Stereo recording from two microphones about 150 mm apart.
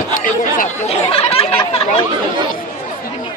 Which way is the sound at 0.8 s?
40° left (ahead or behind).